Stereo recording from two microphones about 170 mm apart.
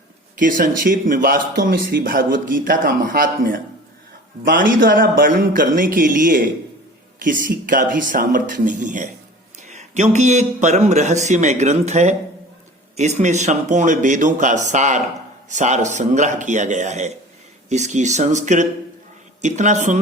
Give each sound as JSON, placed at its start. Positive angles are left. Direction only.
{"t": 0.3, "sound": "speech", "side_deg": -50}